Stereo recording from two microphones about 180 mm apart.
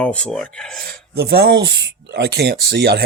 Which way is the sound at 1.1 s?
65° right (ahead or behind).